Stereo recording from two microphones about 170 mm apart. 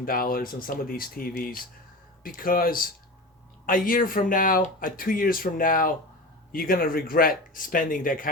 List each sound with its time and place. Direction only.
0.0 s speech: 60° left (ahead or behind)
3.8 s speech: 55° left (ahead or behind)